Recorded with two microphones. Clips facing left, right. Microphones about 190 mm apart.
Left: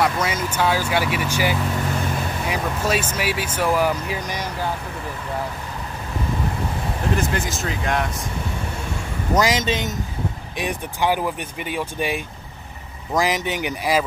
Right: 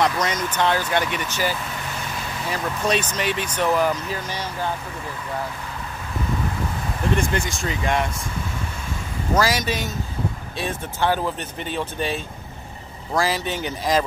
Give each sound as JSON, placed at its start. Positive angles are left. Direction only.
{"t": 0.0, "sound": "speech", "side_deg": 5}
{"t": 7.2, "sound": "speech", "side_deg": 5}
{"t": 9.3, "sound": "speech", "side_deg": 20}